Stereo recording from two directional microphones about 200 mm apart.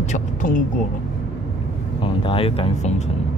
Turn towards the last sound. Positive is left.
turn(degrees=35)  # may be behind; listen again after turning